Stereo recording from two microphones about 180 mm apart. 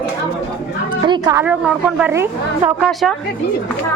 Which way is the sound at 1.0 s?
25° right (ahead or behind).